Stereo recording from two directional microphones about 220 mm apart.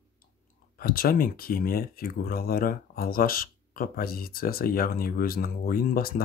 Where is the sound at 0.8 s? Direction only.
40° left (ahead or behind).